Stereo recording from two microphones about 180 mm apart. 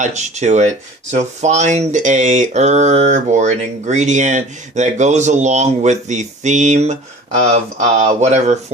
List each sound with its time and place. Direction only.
0.0 s speech: 40° right (ahead or behind)